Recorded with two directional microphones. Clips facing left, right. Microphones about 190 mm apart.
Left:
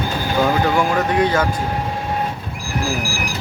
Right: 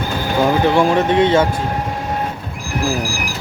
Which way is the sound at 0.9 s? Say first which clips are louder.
Right 4 dB; 25° right (ahead or behind).